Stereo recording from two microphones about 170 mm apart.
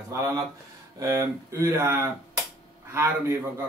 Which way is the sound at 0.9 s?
15° right (ahead or behind).